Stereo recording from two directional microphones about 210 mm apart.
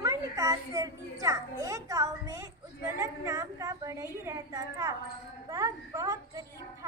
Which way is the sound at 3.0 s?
15° right (ahead or behind).